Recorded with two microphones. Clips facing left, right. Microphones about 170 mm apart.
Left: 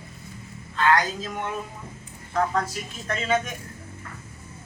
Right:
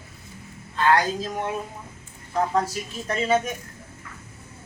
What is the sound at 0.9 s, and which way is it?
Speech, 35° right (ahead or behind).